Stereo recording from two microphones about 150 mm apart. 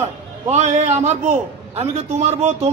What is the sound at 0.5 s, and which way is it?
A man's voice, 50° right (ahead or behind).